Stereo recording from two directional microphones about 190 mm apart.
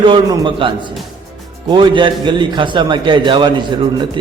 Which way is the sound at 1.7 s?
25° right (ahead or behind).